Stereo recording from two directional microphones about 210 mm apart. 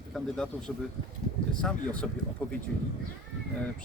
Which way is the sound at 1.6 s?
5° left (ahead or behind).